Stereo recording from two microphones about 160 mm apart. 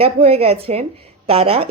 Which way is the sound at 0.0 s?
35° right (ahead or behind).